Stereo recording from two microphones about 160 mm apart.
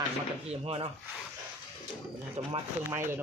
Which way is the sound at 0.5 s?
35° right (ahead or behind).